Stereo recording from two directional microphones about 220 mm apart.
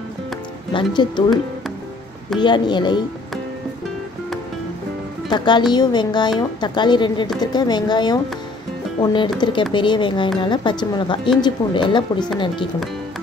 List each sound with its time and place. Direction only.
0.7 s speech: 20° left (ahead or behind)
2.3 s speech: 20° left (ahead or behind)
5.3 s speech: 20° left (ahead or behind)